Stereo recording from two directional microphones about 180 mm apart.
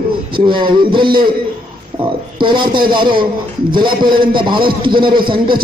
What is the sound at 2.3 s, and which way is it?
A man's voice, 25° right (ahead or behind).